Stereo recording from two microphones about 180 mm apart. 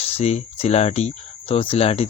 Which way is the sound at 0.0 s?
35° left (ahead or behind).